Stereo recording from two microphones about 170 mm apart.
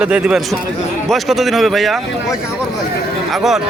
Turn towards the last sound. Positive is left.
turn(degrees=0)  # may be behind; listen again after turning